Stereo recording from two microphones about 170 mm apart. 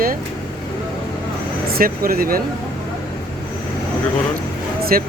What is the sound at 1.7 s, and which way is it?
Speech, 60° right (ahead or behind).